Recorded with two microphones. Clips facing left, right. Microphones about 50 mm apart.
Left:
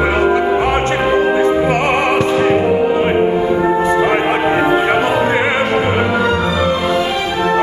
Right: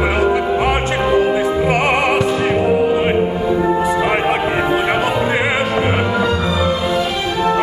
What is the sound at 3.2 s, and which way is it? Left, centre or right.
Music, left.